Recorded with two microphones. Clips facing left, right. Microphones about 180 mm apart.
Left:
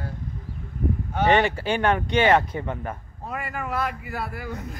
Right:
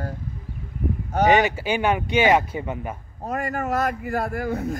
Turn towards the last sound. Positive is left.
turn(degrees=-50)  # may be behind; listen again after turning